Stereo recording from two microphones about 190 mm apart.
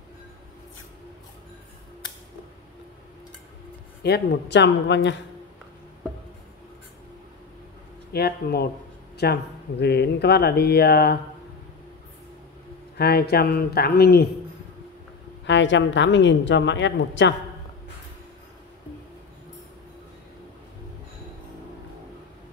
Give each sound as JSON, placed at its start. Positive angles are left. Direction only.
{"t": 4.0, "sound": "a woman's voice", "side_deg": 60}
{"t": 8.1, "sound": "speech", "side_deg": 55}
{"t": 12.9, "sound": "speech", "side_deg": 55}
{"t": 15.4, "sound": "a woman's voice", "side_deg": 70}